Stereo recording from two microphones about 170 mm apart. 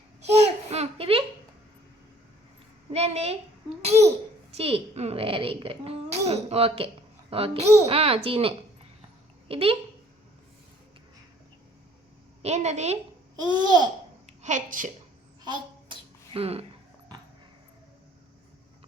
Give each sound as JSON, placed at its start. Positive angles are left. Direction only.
{"t": 0.2, "sound": "a sound", "side_deg": -40}
{"t": 2.9, "sound": "a child's voice", "side_deg": -40}
{"t": 12.4, "sound": "a child's voice", "side_deg": -40}
{"t": 13.5, "sound": "babbling", "side_deg": -25}
{"t": 14.4, "sound": "a child's voice", "side_deg": -50}
{"t": 15.9, "sound": "a sound", "side_deg": -35}